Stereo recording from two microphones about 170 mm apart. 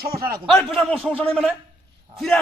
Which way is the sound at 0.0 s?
65° right (ahead or behind).